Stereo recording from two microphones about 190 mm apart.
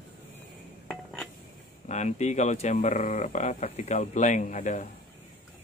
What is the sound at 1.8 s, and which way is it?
Speech, 35° left (ahead or behind).